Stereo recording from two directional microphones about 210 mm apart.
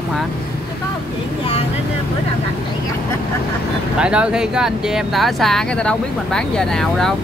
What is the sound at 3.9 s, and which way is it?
Speech, 5° right (ahead or behind).